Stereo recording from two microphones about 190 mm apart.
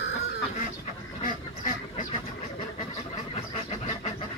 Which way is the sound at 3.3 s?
35° left (ahead or behind).